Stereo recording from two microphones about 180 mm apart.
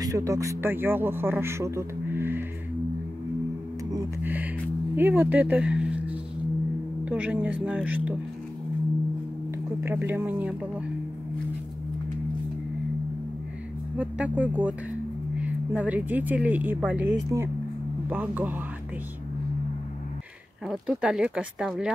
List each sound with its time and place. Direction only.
0.0 s speech: 15° right (ahead or behind)
3.9 s music: 10° right (ahead or behind)
4.9 s speech: 10° right (ahead or behind)
9.8 s speech: 10° right (ahead or behind)
13.9 s speech: 10° right (ahead or behind)
20.6 s speech: centre (ahead or behind)